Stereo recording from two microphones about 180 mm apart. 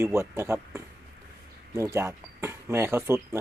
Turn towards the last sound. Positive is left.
turn(degrees=-15)  # may be behind; listen again after turning